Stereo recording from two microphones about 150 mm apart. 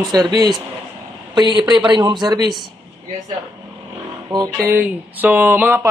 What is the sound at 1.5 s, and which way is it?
Speech, 30° right (ahead or behind).